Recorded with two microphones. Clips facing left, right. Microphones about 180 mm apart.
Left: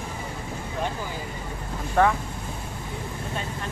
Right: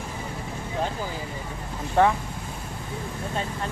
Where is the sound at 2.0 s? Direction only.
20° right (ahead or behind).